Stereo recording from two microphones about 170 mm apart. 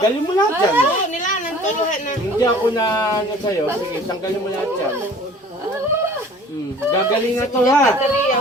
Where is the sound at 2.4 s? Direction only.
20° left (ahead or behind).